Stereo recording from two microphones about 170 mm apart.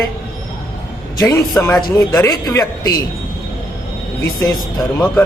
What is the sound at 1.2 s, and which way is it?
Speech, 20° left (ahead or behind).